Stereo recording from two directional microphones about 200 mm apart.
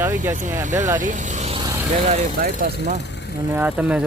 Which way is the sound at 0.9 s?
40° right (ahead or behind).